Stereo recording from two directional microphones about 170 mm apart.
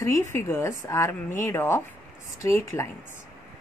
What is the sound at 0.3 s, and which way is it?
Speech, 15° left (ahead or behind).